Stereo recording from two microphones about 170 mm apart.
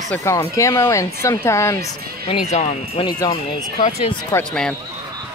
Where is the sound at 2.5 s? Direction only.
45° left (ahead or behind).